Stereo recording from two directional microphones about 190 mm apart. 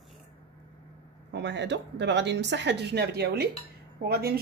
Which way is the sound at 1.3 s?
70° right (ahead or behind).